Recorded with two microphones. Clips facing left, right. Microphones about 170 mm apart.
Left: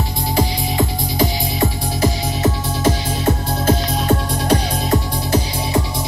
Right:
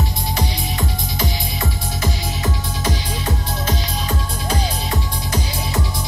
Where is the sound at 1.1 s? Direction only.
35° left (ahead or behind).